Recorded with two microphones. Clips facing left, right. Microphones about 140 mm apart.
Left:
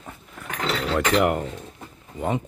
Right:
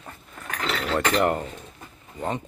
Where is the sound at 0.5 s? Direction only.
20° left (ahead or behind).